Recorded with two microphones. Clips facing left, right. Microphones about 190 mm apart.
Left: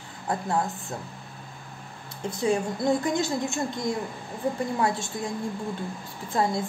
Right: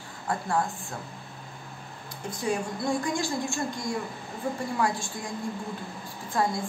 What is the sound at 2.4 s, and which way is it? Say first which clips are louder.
A woman's voice: left 4 dB; 20° left (ahead or behind).